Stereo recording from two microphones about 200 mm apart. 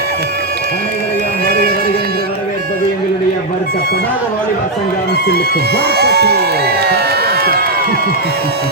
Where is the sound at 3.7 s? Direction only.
55° left (ahead or behind).